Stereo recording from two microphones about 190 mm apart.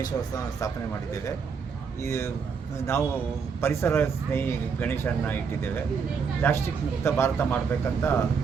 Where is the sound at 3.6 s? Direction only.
15° left (ahead or behind).